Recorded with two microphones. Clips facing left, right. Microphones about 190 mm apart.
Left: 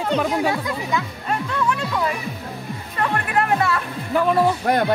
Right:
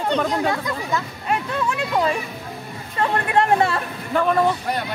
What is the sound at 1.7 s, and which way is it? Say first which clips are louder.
Speech: right 5 dB; 25° right (ahead or behind).